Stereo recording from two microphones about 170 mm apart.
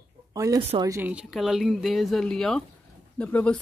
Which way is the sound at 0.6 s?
35° right (ahead or behind).